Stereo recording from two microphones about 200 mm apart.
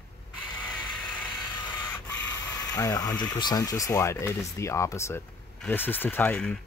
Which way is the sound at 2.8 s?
20° left (ahead or behind).